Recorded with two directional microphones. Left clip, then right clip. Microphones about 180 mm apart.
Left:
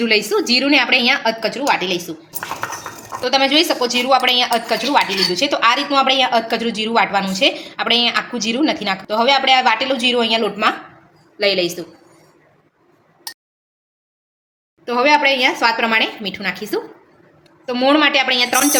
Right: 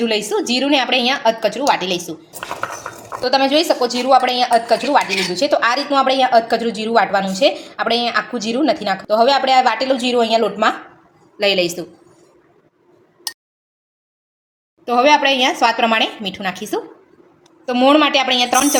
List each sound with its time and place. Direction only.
0.0 s a woman's voice: 20° right (ahead or behind)
3.2 s speech: 15° right (ahead or behind)
5.0 s speech: 10° left (ahead or behind)
5.3 s speech: 15° right (ahead or behind)
11.3 s a woman's voice: 40° right (ahead or behind)
14.8 s a woman's voice: 35° right (ahead or behind)
17.7 s a woman's voice: 30° right (ahead or behind)